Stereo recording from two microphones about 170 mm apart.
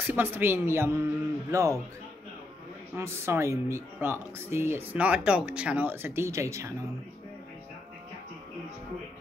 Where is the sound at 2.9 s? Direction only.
15° right (ahead or behind).